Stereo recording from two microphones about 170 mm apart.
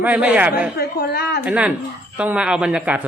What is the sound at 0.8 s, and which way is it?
Speech, 70° left (ahead or behind).